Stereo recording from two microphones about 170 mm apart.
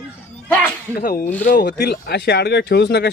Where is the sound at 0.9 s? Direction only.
55° left (ahead or behind).